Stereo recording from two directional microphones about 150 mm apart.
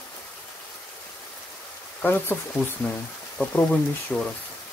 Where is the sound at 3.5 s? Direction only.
10° left (ahead or behind).